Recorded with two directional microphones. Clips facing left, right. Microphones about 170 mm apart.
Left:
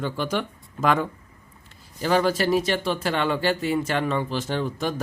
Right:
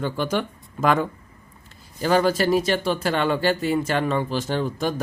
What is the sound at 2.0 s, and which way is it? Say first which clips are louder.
Speech: right 2 dB; 45° right (ahead or behind).